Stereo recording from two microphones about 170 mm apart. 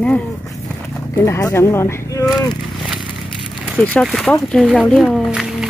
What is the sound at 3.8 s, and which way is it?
Speech, 5° left (ahead or behind).